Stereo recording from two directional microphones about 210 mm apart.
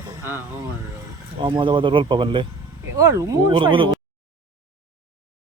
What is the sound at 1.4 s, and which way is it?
Speech, 20° right (ahead or behind).